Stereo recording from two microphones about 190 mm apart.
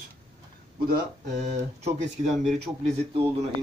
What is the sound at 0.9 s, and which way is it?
A man's voice, 40° right (ahead or behind).